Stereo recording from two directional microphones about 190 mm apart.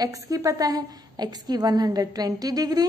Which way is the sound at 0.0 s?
20° right (ahead or behind).